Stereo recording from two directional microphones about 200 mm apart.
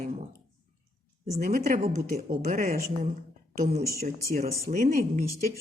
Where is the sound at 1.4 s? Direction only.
40° right (ahead or behind).